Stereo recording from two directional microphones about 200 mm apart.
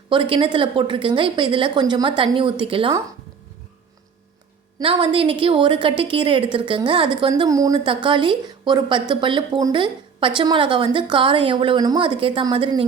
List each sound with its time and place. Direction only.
0.1 s a woman's voice: 25° right (ahead or behind)
4.8 s a woman's voice: 25° right (ahead or behind)